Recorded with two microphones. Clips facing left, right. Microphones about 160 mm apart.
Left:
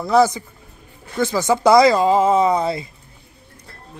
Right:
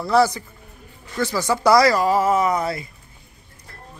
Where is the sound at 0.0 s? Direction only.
20° left (ahead or behind).